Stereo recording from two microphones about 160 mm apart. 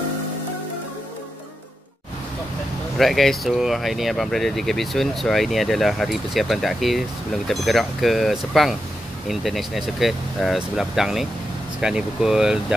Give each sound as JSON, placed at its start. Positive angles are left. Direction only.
{"t": 3.0, "sound": "speech", "side_deg": 0}